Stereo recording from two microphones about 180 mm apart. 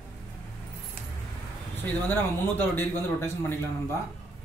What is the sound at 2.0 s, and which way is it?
Speech, 10° left (ahead or behind).